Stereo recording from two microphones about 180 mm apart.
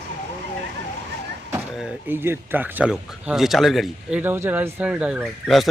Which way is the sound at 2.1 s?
10° right (ahead or behind).